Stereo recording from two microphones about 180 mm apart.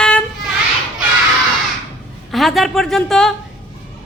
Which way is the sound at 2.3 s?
Centre (ahead or behind).